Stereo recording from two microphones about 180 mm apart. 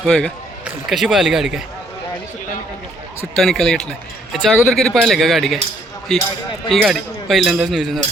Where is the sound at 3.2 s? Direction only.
Centre (ahead or behind).